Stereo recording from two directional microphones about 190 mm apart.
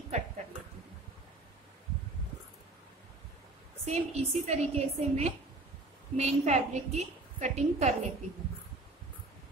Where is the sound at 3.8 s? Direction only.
35° right (ahead or behind).